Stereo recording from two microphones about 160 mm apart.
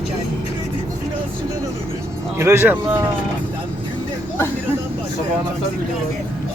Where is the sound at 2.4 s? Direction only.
15° right (ahead or behind).